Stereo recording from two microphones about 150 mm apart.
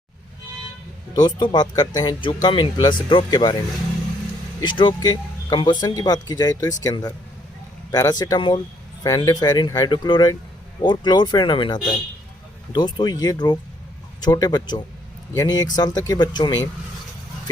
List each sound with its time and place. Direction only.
1.1 s speech: 30° left (ahead or behind)
4.6 s speech: 30° left (ahead or behind)